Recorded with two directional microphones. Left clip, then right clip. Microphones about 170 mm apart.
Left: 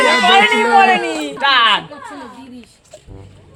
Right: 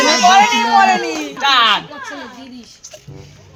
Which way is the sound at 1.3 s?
30° left (ahead or behind).